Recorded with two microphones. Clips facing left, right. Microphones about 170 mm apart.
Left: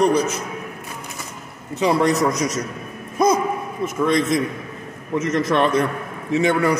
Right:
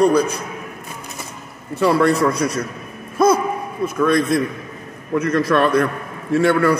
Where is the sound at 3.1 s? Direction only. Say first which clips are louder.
Right 2 dB; 15° left (ahead or behind).